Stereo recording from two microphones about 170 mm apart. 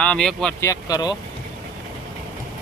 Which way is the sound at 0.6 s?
20° left (ahead or behind).